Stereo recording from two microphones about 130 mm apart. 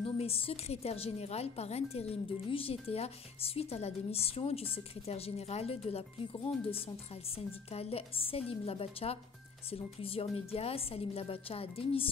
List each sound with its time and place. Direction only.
0.0 s speech: 45° left (ahead or behind)